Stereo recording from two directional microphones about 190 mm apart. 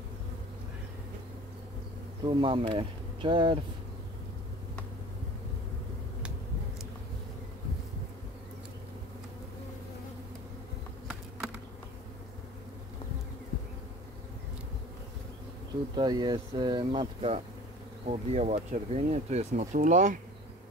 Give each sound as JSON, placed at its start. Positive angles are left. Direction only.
{"t": 2.2, "sound": "speech", "side_deg": -25}
{"t": 16.0, "sound": "speech", "side_deg": -20}